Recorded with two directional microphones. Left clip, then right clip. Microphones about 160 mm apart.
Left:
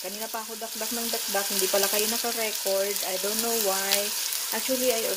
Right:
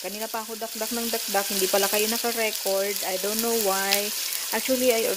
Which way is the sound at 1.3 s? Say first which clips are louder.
Right 3 dB; 40° right (ahead or behind).